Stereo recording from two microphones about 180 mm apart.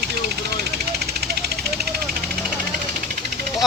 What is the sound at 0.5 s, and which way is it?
Vehicle, 65° right (ahead or behind).